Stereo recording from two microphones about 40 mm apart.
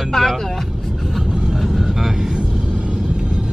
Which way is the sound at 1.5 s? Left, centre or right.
Centre.